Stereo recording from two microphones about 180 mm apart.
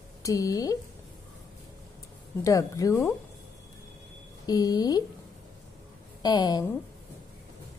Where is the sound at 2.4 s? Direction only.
20° left (ahead or behind).